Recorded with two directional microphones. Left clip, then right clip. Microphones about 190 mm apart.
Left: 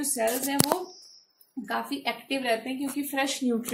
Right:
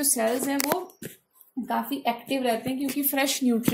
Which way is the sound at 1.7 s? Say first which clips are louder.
Right 3 dB; 35° right (ahead or behind).